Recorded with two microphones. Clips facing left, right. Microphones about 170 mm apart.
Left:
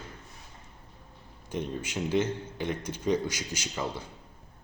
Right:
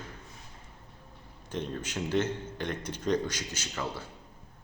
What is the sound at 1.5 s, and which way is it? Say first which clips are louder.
A man's voice: left 2 dB; 10° left (ahead or behind).